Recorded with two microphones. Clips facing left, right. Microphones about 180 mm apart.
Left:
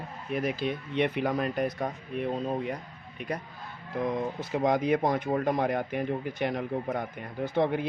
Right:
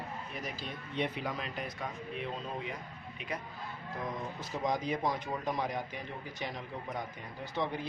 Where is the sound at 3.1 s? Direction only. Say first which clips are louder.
Left 6 dB; 40° left (ahead or behind).